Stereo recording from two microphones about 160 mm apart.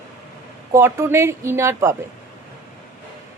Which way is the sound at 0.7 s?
20° right (ahead or behind).